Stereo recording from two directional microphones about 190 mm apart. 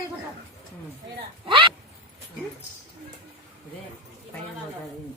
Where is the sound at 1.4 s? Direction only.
25° right (ahead or behind).